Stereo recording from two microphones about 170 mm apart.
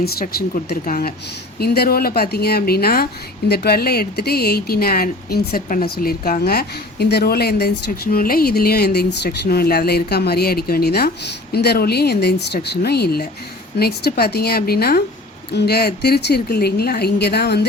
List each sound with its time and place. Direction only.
0.0 s a woman's voice: 65° left (ahead or behind)